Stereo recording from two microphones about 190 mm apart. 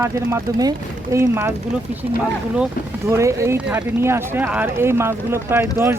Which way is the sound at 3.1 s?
15° right (ahead or behind).